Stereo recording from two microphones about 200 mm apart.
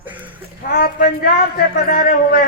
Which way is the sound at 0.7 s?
50° left (ahead or behind).